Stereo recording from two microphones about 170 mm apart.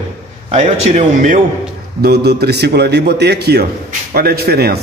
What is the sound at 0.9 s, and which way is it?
Speech, 50° right (ahead or behind).